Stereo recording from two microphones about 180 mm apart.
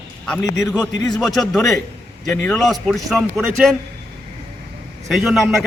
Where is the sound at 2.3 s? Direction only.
15° left (ahead or behind).